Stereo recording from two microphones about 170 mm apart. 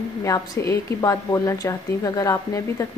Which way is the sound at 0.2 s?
15° left (ahead or behind).